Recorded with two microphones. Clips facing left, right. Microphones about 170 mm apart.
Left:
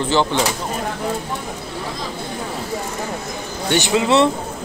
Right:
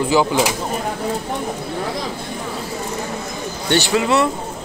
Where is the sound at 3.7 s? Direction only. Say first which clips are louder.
Even; 20° left (ahead or behind).